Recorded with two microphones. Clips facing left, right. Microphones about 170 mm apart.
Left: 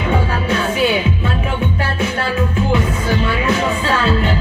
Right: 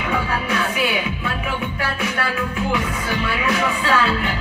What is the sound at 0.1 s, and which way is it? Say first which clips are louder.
Music: left 4 dB; 25° left (ahead or behind).